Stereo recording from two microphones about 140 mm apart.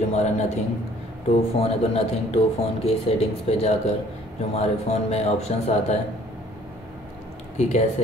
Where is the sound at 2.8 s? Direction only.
45° left (ahead or behind).